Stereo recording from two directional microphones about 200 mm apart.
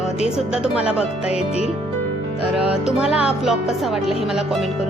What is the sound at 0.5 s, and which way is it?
Speech, 5° right (ahead or behind).